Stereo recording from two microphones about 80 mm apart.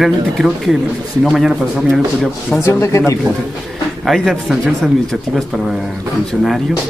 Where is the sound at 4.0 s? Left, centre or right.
Centre.